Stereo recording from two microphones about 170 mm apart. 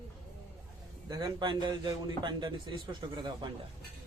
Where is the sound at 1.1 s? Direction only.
25° right (ahead or behind).